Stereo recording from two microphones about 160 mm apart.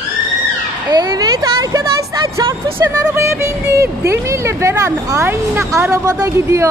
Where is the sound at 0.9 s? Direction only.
25° right (ahead or behind).